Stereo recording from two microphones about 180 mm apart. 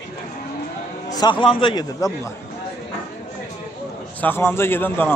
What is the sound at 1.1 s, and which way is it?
Speech, 25° left (ahead or behind).